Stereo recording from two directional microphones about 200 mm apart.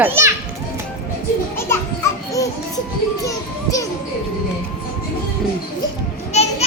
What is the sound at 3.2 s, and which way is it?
Music, 15° left (ahead or behind).